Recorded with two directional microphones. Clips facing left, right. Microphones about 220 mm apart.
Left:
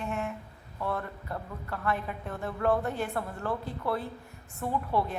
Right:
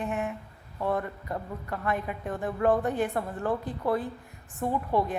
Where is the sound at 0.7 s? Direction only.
15° right (ahead or behind).